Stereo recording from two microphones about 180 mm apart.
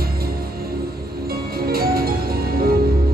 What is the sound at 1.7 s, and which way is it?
Music, 55° right (ahead or behind).